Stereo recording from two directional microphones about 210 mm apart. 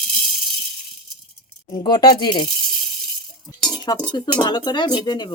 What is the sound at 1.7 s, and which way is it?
Speech, 20° left (ahead or behind).